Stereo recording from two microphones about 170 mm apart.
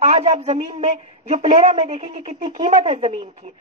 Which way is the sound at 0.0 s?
45° right (ahead or behind).